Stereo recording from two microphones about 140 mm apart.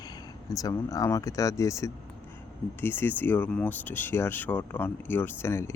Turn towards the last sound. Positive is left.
turn(degrees=20)  # may be behind; listen again after turning